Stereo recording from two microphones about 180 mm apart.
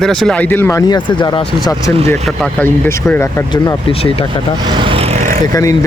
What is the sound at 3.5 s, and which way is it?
Speech, 30° left (ahead or behind).